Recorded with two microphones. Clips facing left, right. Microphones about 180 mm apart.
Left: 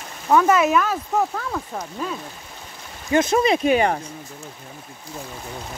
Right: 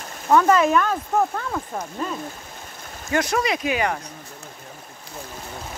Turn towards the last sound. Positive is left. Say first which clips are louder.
# left 5 dB
turn(degrees=30)  # may be behind; listen again after turning